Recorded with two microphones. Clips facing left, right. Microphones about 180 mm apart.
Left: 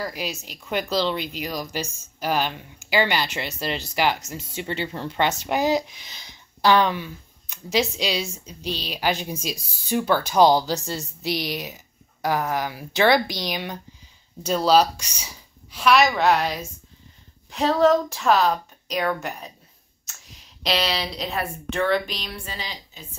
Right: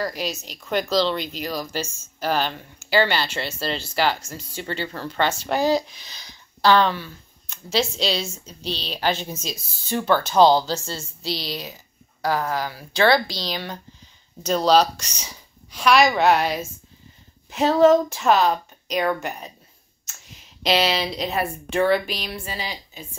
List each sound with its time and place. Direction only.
0.0 s speech: 10° left (ahead or behind)
14.4 s a woman's voice: 5° left (ahead or behind); by 23.0 s 10° right (ahead or behind)